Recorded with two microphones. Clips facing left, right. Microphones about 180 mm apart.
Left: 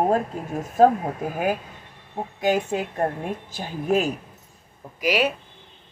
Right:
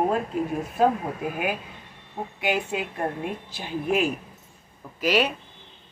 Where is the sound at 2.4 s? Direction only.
40° left (ahead or behind).